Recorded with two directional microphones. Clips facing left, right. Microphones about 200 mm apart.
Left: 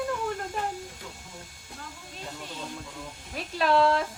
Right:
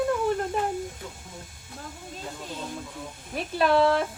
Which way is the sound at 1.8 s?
55° right (ahead or behind).